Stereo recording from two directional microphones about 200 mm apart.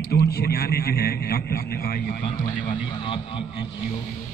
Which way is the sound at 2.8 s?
25° left (ahead or behind).